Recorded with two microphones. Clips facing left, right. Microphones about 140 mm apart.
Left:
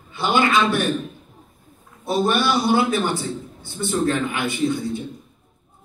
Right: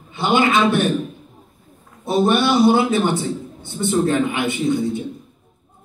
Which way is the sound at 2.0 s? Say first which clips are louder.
Right 3 dB; 20° right (ahead or behind).